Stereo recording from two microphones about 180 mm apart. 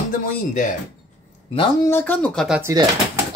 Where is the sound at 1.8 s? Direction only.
10° left (ahead or behind).